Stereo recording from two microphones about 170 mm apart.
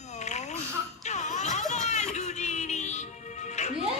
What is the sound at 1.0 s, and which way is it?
Music, 45° left (ahead or behind).